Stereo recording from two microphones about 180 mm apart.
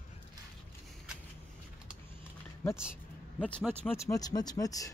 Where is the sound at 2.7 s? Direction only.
5° right (ahead or behind).